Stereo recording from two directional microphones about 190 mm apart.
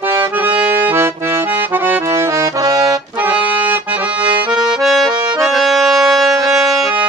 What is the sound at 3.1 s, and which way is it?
Music, 10° right (ahead or behind).